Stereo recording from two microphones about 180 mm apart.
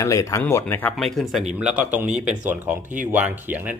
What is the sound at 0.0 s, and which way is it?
Speech, 20° left (ahead or behind).